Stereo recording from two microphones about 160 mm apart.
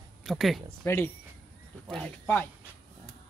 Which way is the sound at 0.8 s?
10° left (ahead or behind).